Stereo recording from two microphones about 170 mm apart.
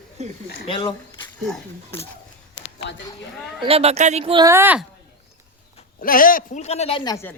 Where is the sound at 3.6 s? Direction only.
35° right (ahead or behind).